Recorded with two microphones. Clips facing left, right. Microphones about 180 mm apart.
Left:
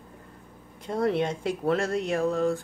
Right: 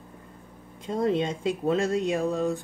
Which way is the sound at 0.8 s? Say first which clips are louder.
Even; 20° right (ahead or behind).